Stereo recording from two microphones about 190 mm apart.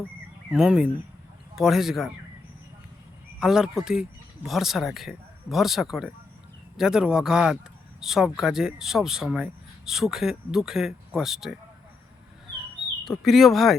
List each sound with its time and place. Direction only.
0.5 s speech: 5° right (ahead or behind)
3.4 s speech: 5° right (ahead or behind)
13.1 s speech: centre (ahead or behind)